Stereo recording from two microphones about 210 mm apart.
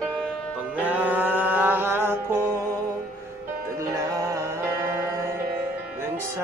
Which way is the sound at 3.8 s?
15° right (ahead or behind).